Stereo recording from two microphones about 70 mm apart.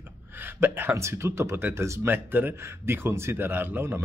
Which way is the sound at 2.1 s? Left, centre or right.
Right.